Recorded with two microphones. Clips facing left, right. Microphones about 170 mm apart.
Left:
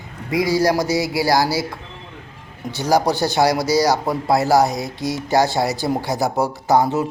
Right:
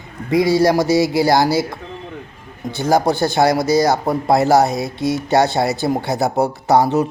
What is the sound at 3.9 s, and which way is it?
Speech, 25° right (ahead or behind).